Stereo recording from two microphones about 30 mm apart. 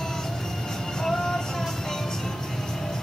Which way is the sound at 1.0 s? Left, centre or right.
Centre.